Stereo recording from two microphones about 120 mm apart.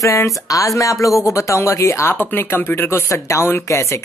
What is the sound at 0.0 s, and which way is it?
Speech, 25° left (ahead or behind).